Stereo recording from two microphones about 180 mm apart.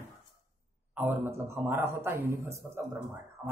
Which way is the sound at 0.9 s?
10° right (ahead or behind).